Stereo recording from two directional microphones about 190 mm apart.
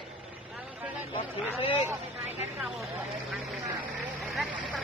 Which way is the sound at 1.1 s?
30° left (ahead or behind).